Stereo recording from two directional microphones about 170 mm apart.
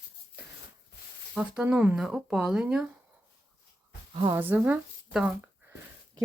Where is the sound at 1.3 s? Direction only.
5° right (ahead or behind).